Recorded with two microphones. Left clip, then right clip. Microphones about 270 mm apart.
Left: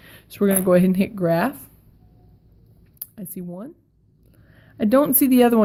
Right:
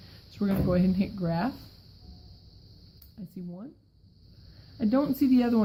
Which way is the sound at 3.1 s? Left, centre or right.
Left.